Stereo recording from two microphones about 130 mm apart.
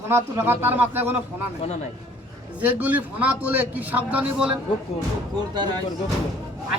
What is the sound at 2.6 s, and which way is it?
A man's voice, 10° right (ahead or behind).